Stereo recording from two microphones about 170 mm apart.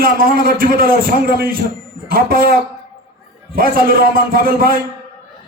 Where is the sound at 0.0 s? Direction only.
60° right (ahead or behind).